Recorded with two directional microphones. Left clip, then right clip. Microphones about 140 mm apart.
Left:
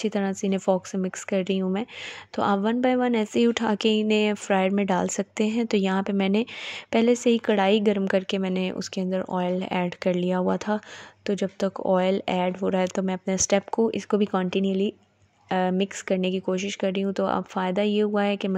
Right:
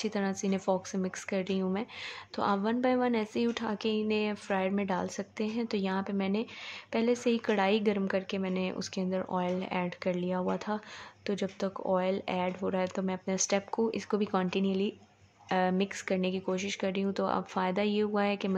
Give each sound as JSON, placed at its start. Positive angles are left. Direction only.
{"t": 0.0, "sound": "speech", "side_deg": 45}